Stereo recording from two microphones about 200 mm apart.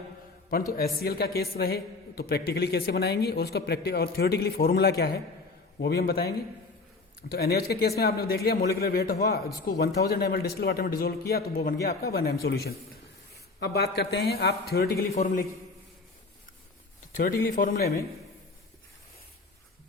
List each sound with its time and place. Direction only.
0.7 s a woman's voice: 50° left (ahead or behind)
17.1 s a woman's voice: 40° left (ahead or behind)